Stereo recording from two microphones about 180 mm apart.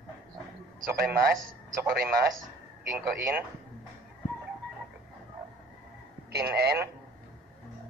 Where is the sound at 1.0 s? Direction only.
55° right (ahead or behind).